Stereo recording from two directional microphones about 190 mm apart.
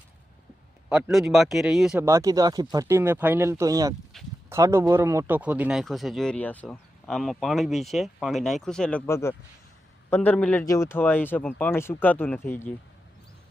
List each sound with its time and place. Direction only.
0.9 s speech: 5° right (ahead or behind)
2.0 s speech: 15° right (ahead or behind); by 12.7 s 10° left (ahead or behind)